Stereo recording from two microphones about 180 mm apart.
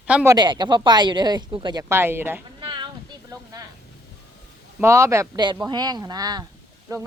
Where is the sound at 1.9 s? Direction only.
10° right (ahead or behind).